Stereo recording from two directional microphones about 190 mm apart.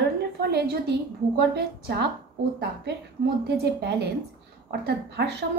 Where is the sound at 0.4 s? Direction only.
60° right (ahead or behind).